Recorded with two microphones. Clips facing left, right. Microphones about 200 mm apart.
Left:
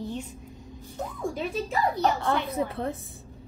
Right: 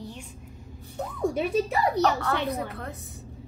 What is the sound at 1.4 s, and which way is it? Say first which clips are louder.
Speech: right 2 dB; 70° right (ahead or behind).